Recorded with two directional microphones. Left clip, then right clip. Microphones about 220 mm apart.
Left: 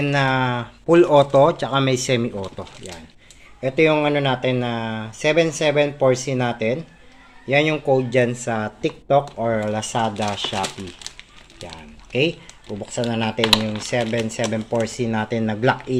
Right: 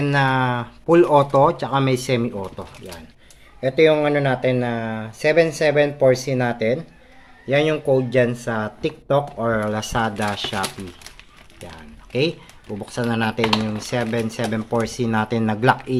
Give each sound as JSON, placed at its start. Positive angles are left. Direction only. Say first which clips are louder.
{"t": 0.0, "sound": "speech", "louder": "right 1 dB", "side_deg": -5}
{"t": 12.8, "sound": "speech", "louder": "right 1 dB", "side_deg": -15}